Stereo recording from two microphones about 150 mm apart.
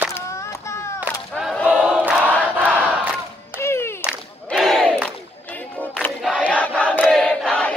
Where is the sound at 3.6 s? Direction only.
15° left (ahead or behind).